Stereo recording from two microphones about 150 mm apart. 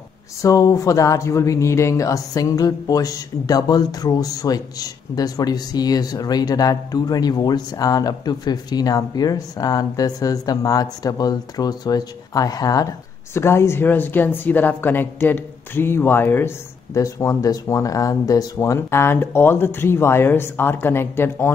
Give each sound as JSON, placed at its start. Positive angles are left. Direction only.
{"t": 0.4, "sound": "a woman's voice", "side_deg": 20}